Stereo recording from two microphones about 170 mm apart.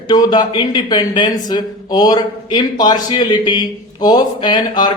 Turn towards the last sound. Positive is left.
turn(degrees=25)  # may be behind; listen again after turning